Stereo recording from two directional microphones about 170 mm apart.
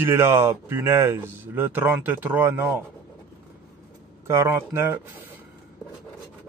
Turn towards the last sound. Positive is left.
turn(degrees=-15)  # may be behind; listen again after turning